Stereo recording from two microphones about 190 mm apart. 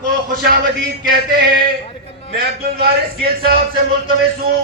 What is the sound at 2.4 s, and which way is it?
A man's voice, 55° right (ahead or behind).